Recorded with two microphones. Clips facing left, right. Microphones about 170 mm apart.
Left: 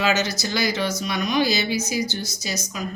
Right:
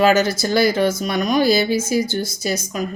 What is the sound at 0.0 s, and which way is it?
A woman's voice, 50° right (ahead or behind).